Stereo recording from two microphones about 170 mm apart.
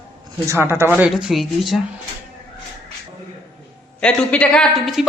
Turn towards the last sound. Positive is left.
turn(degrees=0)  # may be behind; listen again after turning